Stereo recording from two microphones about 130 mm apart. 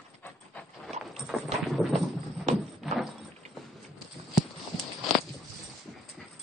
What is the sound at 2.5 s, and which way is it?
Horse, centre (ahead or behind).